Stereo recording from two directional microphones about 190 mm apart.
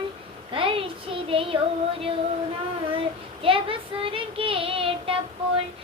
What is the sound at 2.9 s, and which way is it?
Child singing, 30° right (ahead or behind).